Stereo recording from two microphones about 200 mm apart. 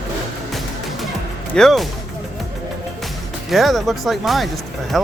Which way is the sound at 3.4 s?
Centre (ahead or behind).